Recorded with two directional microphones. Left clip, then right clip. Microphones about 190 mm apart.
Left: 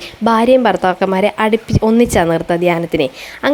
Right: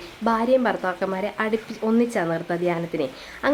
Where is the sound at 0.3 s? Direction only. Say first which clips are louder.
Left 9 dB; 40° left (ahead or behind).